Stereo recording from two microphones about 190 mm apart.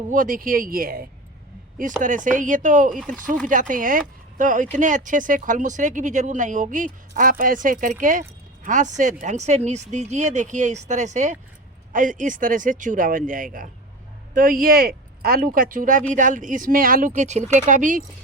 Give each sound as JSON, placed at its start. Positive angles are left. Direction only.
{"t": 0.1, "sound": "speech", "side_deg": -45}